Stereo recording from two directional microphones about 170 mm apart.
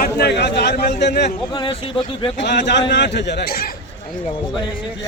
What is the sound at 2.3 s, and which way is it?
A man's voice, 90° left.